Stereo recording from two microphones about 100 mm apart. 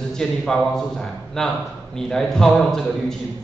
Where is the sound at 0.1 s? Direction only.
5° left (ahead or behind).